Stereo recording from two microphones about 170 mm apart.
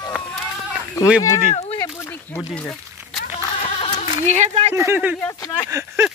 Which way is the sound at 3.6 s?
35° left (ahead or behind).